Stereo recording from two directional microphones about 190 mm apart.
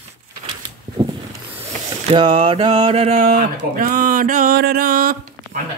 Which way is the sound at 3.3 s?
60° right (ahead or behind).